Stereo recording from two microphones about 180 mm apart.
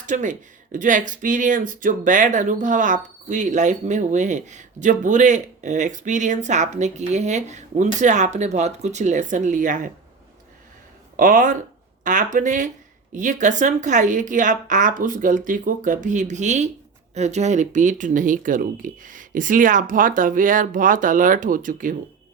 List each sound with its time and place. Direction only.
0.0 s speech: 45° right (ahead or behind)
11.2 s speech: 45° right (ahead or behind)